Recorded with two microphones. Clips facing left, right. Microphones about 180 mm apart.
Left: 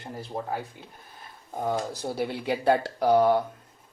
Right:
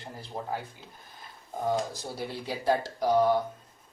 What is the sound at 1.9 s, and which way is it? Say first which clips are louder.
Speech: left 6 dB; 65° left (ahead or behind).